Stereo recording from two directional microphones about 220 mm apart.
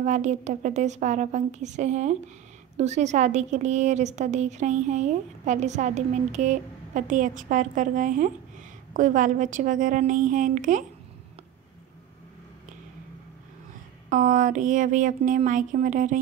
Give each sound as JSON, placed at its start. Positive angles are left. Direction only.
{"t": 0.0, "sound": "a woman's voice", "side_deg": -35}
{"t": 14.0, "sound": "a woman's voice", "side_deg": -35}